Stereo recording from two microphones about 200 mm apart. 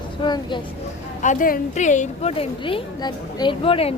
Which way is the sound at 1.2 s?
40° left (ahead or behind).